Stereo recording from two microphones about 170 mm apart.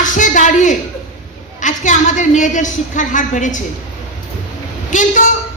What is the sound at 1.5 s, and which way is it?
A woman's voice, 45° left (ahead or behind).